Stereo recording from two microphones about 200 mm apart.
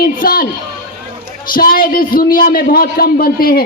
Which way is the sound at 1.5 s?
45° left (ahead or behind).